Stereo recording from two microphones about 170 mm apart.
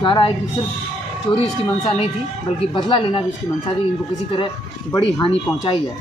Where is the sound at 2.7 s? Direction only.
30° left (ahead or behind).